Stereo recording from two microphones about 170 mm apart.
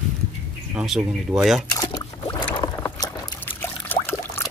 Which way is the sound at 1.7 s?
20° left (ahead or behind).